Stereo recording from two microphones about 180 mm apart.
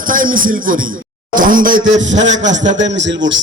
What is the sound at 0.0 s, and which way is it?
A man's voice, 50° right (ahead or behind).